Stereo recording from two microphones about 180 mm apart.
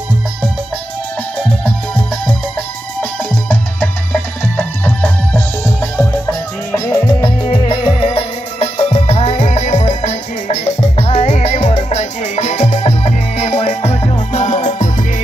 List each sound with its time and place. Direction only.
3.0 s music: 10° left (ahead or behind); by 15.0 s 45° left (ahead or behind)